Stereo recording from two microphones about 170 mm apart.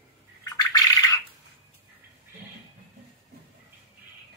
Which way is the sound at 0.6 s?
20° left (ahead or behind).